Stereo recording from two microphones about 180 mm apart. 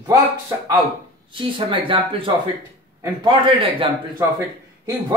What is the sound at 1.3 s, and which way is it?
Speech, 30° right (ahead or behind).